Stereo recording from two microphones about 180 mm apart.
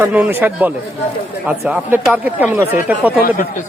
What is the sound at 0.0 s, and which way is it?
Speech, 10° right (ahead or behind).